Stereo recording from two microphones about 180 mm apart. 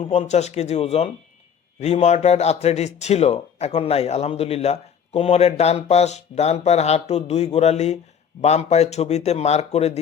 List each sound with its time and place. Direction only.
0.0 s a man's voice: 40° left (ahead or behind)